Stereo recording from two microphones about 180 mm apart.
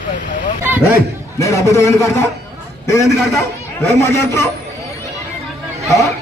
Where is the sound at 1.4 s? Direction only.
15° left (ahead or behind).